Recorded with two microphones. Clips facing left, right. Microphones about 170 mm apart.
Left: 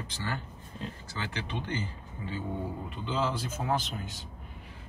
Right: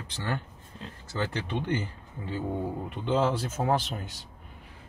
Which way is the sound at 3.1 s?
65° right (ahead or behind).